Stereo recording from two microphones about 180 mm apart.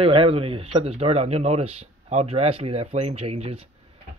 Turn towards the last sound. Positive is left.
turn(degrees=-35)  # may be behind; listen again after turning